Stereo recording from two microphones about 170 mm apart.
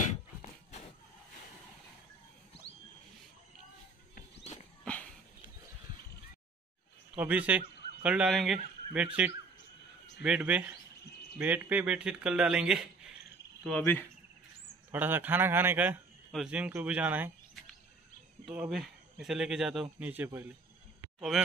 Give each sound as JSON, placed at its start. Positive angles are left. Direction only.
{"t": 0.4, "sound": "a sound", "side_deg": 40}
{"t": 7.2, "sound": "a man's voice", "side_deg": -10}
{"t": 13.7, "sound": "speech", "side_deg": 10}
{"t": 14.9, "sound": "speech", "side_deg": -10}
{"t": 18.4, "sound": "speech", "side_deg": -5}